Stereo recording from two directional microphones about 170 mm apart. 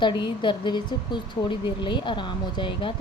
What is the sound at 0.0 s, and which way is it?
A woman's voice, 25° left (ahead or behind).